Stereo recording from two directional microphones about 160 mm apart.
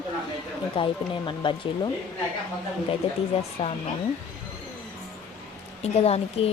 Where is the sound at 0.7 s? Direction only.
30° left (ahead or behind).